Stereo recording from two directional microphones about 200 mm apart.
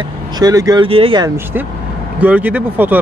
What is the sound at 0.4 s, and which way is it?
Speech, 20° right (ahead or behind).